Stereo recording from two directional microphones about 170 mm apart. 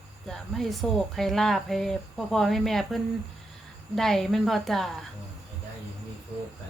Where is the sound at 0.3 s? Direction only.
Centre (ahead or behind).